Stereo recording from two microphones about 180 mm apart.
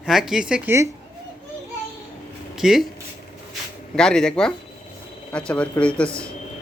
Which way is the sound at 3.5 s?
5° left (ahead or behind).